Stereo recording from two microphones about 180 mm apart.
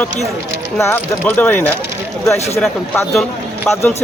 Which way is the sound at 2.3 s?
35° left (ahead or behind).